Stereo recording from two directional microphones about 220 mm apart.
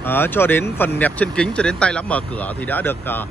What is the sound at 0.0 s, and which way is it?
Speech, 10° left (ahead or behind).